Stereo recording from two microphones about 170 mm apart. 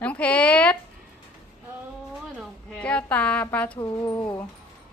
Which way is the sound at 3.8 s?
20° left (ahead or behind).